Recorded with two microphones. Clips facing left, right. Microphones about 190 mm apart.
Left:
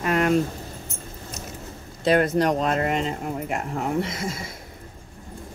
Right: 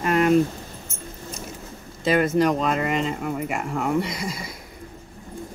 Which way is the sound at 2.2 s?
Centre (ahead or behind).